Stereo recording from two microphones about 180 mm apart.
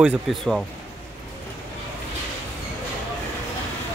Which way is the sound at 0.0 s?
Centre (ahead or behind).